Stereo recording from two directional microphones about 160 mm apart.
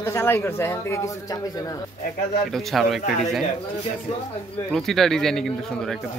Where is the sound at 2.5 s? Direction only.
Centre (ahead or behind).